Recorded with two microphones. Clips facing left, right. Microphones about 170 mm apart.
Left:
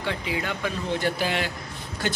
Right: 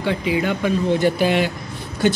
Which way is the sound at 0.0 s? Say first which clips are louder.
Right 8 dB; 15° right (ahead or behind).